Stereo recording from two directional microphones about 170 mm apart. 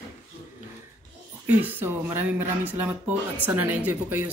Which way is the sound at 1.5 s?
10° right (ahead or behind).